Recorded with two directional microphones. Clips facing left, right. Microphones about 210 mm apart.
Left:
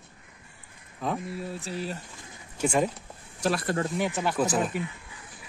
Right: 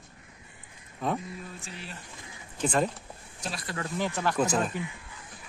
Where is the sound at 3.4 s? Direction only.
65° left (ahead or behind).